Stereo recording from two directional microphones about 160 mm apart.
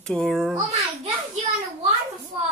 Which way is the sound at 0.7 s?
40° right (ahead or behind).